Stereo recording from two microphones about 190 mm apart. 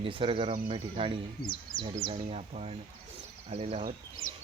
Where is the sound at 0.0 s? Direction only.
30° right (ahead or behind).